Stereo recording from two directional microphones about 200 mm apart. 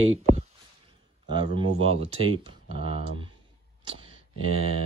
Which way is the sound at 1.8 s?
30° right (ahead or behind).